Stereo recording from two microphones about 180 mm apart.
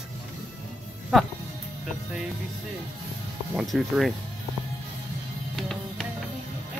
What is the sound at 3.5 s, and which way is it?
Speech, centre (ahead or behind).